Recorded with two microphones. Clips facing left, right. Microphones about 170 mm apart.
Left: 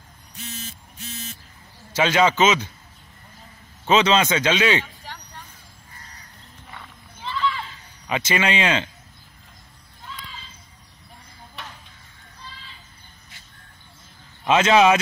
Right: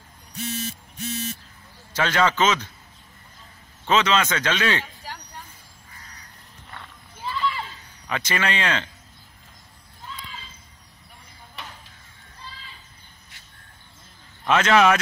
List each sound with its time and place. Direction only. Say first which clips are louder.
2.0 s a man's voice: left 3 dB; 15° left (ahead or behind)
3.8 s a man's voice: left 3 dB; 20° left (ahead or behind)
7.2 s a sound: left 1 dB; 5° right (ahead or behind)
8.1 s a man's voice: left 3 dB; 15° left (ahead or behind)
11.6 s a sound: left 1 dB; centre (ahead or behind)
14.4 s a man's voice: left 2 dB; 20° left (ahead or behind)